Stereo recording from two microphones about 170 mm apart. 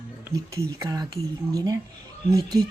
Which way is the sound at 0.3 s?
20° right (ahead or behind).